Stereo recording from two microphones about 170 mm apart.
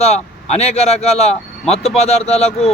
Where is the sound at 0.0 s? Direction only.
40° left (ahead or behind).